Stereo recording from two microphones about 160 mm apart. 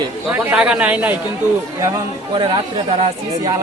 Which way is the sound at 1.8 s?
20° right (ahead or behind).